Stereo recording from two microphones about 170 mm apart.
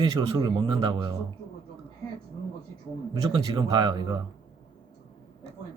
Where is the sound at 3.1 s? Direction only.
25° right (ahead or behind).